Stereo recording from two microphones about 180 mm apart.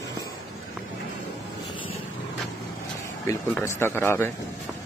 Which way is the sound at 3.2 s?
15° left (ahead or behind).